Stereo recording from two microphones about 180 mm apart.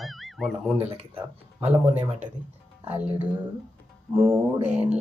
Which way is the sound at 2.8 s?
10° right (ahead or behind).